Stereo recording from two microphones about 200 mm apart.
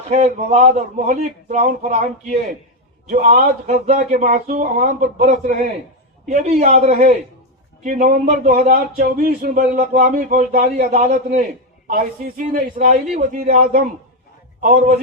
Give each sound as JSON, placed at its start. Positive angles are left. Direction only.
{"t": 0.1, "sound": "speech", "side_deg": -35}
{"t": 3.1, "sound": "speech", "side_deg": -40}
{"t": 10.9, "sound": "speech", "side_deg": -35}
{"t": 12.5, "sound": "speech", "side_deg": -40}
{"t": 14.6, "sound": "speech", "side_deg": -40}